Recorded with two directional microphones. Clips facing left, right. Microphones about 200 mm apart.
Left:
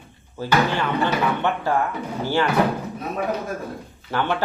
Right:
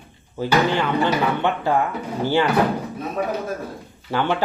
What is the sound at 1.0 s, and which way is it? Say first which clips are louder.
Speech: right 2 dB; 15° right (ahead or behind).